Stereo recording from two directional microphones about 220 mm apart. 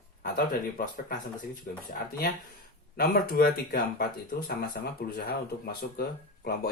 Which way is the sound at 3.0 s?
45° left (ahead or behind).